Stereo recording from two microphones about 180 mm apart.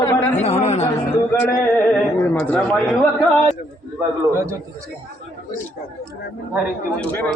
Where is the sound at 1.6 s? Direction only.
5° left (ahead or behind).